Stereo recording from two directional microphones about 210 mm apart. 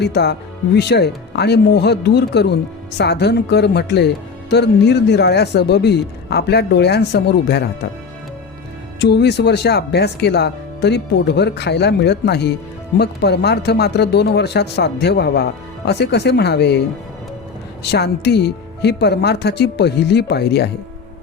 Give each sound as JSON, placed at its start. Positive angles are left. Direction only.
{"t": 0.0, "sound": "speech", "side_deg": 50}
{"t": 9.0, "sound": "speech", "side_deg": 55}
{"t": 17.8, "sound": "speech", "side_deg": 50}